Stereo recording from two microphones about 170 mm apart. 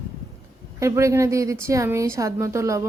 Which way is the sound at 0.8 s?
15° right (ahead or behind).